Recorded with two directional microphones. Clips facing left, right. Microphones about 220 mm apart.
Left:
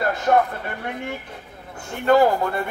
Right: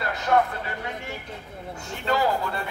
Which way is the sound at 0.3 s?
50° left (ahead or behind).